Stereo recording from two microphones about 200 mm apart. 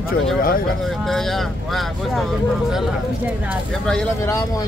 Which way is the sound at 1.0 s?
Centre (ahead or behind).